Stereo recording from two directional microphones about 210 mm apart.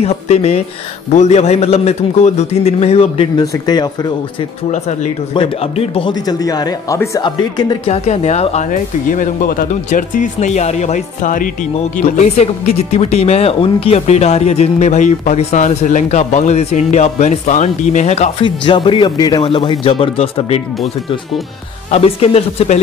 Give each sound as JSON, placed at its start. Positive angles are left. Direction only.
{"t": 0.0, "sound": "a man's voice", "side_deg": 30}
{"t": 4.6, "sound": "a man's voice", "side_deg": 35}